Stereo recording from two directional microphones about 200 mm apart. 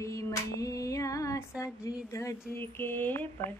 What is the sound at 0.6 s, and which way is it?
Music, 15° left (ahead or behind).